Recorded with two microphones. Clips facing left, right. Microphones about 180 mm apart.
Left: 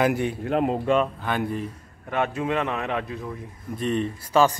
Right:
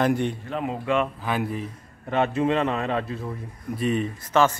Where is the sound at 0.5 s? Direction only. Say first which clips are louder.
Left 6 dB; 50° left (ahead or behind).